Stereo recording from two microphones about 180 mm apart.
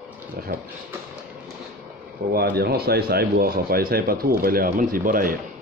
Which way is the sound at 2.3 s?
60° right (ahead or behind).